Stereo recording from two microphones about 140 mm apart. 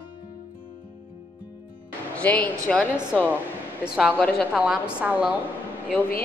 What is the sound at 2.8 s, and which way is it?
Speech, 10° right (ahead or behind).